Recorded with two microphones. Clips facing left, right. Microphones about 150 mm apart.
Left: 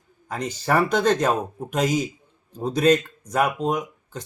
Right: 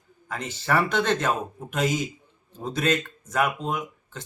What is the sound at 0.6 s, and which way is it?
Speech, 40° left (ahead or behind).